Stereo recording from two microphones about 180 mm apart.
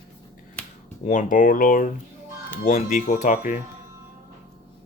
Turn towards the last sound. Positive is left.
turn(degrees=45)  # may be behind; listen again after turning